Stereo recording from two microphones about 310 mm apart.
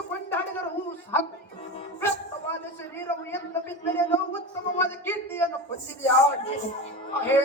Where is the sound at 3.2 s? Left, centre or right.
Centre.